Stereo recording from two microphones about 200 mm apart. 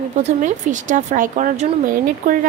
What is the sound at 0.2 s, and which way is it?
A woman's voice, 35° right (ahead or behind).